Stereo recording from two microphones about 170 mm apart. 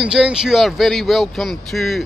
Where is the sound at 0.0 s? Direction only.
5° right (ahead or behind).